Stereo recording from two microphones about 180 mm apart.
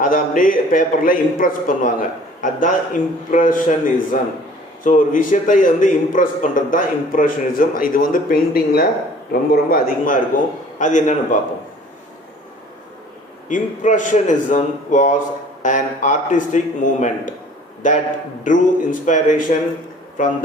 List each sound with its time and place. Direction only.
0.0 s a man's voice: 50° left (ahead or behind)
13.5 s a man's voice: 45° left (ahead or behind)